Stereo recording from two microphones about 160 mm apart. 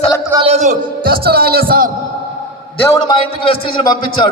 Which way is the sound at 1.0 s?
70° right (ahead or behind).